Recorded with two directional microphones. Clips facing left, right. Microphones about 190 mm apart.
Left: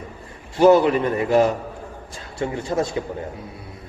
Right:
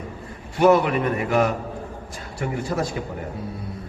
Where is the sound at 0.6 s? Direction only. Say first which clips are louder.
Left 3 dB; 30° left (ahead or behind).